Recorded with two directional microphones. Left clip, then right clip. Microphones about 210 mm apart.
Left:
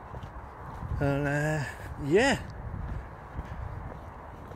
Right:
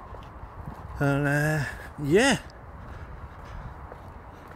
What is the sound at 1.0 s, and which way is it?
Speech, 20° right (ahead or behind).